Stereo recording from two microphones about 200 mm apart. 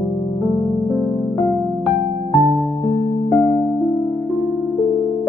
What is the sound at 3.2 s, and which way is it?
Music, 30° left (ahead or behind).